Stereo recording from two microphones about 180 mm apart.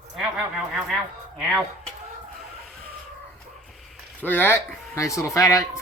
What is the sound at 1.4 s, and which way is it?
Speech, centre (ahead or behind).